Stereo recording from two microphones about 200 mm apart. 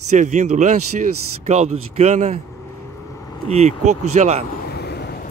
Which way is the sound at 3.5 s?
35° right (ahead or behind).